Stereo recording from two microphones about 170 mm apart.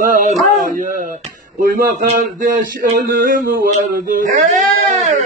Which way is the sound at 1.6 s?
55° right (ahead or behind).